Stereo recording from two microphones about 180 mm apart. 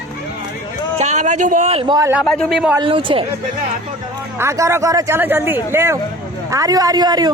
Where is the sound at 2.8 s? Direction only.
30° right (ahead or behind).